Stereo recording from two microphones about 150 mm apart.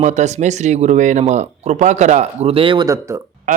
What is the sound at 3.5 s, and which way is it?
Speech, 60° right (ahead or behind).